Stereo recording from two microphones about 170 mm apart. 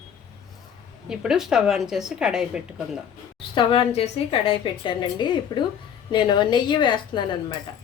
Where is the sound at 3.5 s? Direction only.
30° left (ahead or behind).